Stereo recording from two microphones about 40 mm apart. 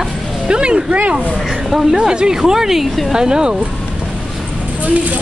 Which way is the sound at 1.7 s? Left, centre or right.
Centre.